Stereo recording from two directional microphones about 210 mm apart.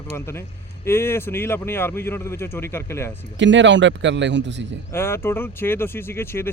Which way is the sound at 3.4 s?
60° right (ahead or behind).